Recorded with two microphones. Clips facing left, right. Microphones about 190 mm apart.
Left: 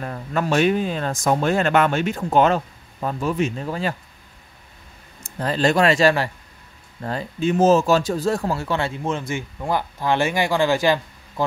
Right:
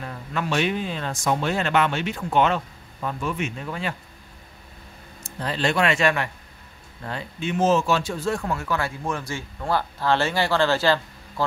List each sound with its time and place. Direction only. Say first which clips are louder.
0.0 s speech: left 5 dB; 45° left (ahead or behind)
5.2 s speech: left 5 dB; 45° left (ahead or behind); by 11.4 s 15° left (ahead or behind)